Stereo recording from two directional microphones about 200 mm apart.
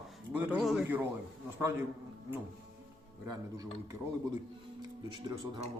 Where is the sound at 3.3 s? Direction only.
20° right (ahead or behind).